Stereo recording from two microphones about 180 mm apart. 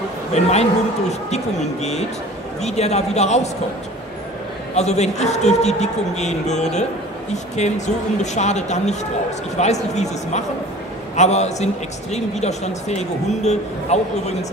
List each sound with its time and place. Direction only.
0.3 s a man's voice: 35° left (ahead or behind)
4.7 s a man's voice: 40° left (ahead or behind)